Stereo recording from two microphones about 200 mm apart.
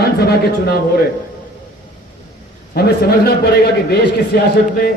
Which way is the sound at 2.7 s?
50° left (ahead or behind).